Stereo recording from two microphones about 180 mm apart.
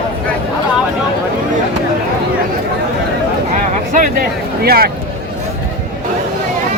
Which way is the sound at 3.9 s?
50° right (ahead or behind).